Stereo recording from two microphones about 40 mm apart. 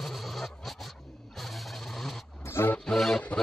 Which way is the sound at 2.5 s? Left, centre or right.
Left.